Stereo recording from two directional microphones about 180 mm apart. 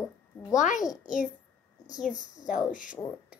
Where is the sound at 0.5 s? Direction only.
45° left (ahead or behind).